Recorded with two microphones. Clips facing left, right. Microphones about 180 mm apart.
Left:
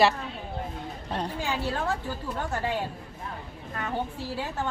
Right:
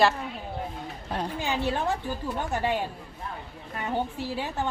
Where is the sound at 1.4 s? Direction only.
20° right (ahead or behind).